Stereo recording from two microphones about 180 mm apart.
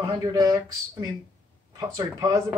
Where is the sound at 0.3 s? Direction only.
20° right (ahead or behind).